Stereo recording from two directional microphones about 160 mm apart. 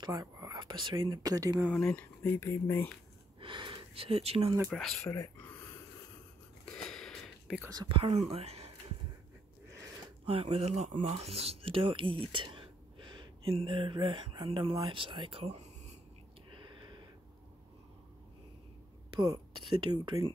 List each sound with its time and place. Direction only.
0.1 s speech: 20° right (ahead or behind)
1.7 s speech: 5° left (ahead or behind)
3.3 s speech: 30° right (ahead or behind)
4.6 s speech: centre (ahead or behind)
5.1 s speech: 20° left (ahead or behind)
5.5 s a sound: 15° left (ahead or behind)
6.6 s a sound: 5° left (ahead or behind)
7.6 s speech: 25° right (ahead or behind)
10.2 s speech: 40° right (ahead or behind)
16.6 s a sound: 30° right (ahead or behind)
19.1 s speech: 20° right (ahead or behind)